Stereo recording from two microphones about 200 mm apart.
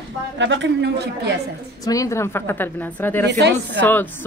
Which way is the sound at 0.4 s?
65° right (ahead or behind).